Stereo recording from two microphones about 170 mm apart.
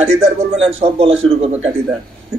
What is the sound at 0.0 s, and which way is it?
A man's voice, 35° right (ahead or behind).